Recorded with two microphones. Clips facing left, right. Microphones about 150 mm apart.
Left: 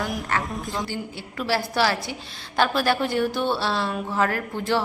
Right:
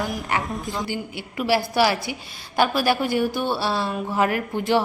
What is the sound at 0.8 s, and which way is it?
A woman's voice, 15° right (ahead or behind).